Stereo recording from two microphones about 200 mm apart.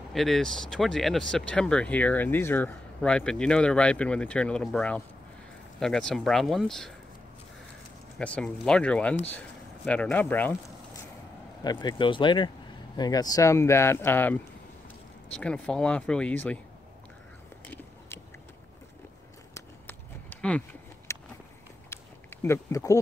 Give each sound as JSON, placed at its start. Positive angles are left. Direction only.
{"t": 0.1, "sound": "speech", "side_deg": 0}
{"t": 8.2, "sound": "speech", "side_deg": 5}
{"t": 11.6, "sound": "speech", "side_deg": 20}
{"t": 19.5, "sound": "a sound", "side_deg": 10}